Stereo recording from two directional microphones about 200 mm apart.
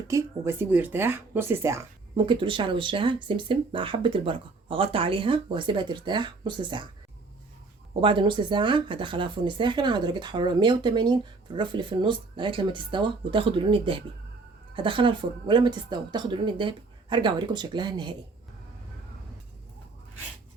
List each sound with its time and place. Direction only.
0.1 s speech: 15° right (ahead or behind)
2.1 s speech: 25° right (ahead or behind)
8.0 s speech: 25° right (ahead or behind)